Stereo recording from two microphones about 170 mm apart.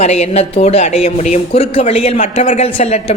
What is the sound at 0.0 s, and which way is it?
Speech, 40° left (ahead or behind).